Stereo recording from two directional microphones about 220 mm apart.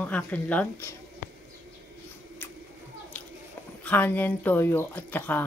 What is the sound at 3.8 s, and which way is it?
Speech, 10° left (ahead or behind).